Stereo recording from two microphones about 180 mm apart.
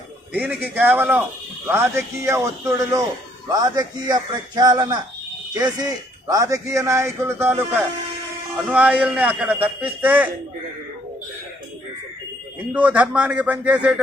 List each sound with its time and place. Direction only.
0.3 s a man's voice: 10° right (ahead or behind)
12.7 s a man's voice: 10° right (ahead or behind)